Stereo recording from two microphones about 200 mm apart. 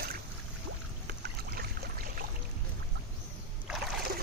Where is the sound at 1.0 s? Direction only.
55° right (ahead or behind).